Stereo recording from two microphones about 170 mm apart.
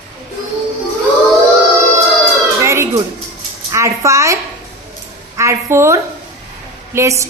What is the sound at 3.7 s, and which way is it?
A woman's voice, 15° right (ahead or behind).